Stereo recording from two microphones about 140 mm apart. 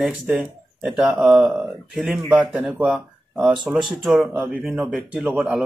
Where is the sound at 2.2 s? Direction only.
35° right (ahead or behind).